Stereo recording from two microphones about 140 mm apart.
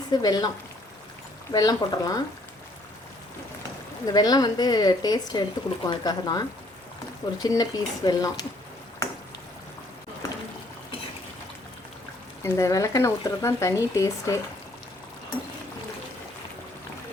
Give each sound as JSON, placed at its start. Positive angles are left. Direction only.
{"t": 0.1, "sound": "speech", "side_deg": 30}
{"t": 1.5, "sound": "speech", "side_deg": 25}
{"t": 4.0, "sound": "speech", "side_deg": 30}
{"t": 7.4, "sound": "speech", "side_deg": 25}
{"t": 12.4, "sound": "speech", "side_deg": 20}